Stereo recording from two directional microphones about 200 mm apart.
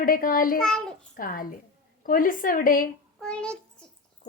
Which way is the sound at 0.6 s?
Centre (ahead or behind).